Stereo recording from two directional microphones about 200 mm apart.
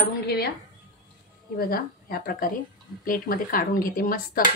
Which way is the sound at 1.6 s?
45° left (ahead or behind).